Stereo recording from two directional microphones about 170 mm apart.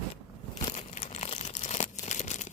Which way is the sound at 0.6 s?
40° left (ahead or behind).